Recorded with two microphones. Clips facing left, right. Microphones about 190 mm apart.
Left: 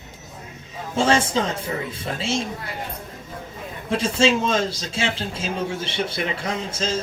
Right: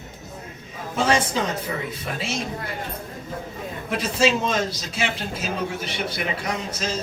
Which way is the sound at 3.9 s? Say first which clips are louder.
Left 2 dB; 25° left (ahead or behind).